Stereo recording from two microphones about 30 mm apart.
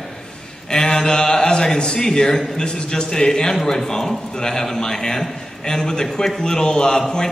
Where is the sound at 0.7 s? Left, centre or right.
Left.